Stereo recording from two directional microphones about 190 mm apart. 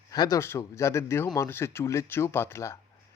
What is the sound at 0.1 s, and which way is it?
A man's voice, 20° left (ahead or behind).